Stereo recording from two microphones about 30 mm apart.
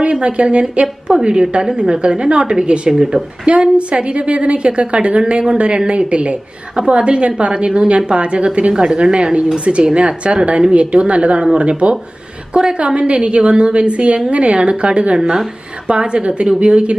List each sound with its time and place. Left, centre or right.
0.0 s a woman's voice: right
2.9 s speech: right
3.7 s a woman's voice: right
15.1 s speech: right
15.9 s a woman's voice: right